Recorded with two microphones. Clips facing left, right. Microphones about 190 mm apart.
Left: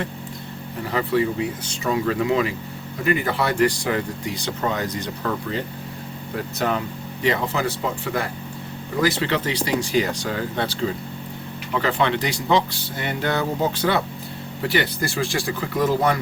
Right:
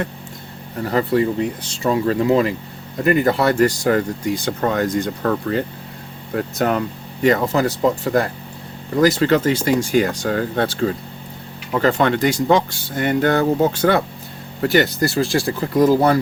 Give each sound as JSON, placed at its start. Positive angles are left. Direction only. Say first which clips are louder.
{"t": 0.9, "sound": "speech", "louder": "right 4 dB", "side_deg": -45}
{"t": 9.0, "sound": "speech", "louder": "right 7 dB", "side_deg": -45}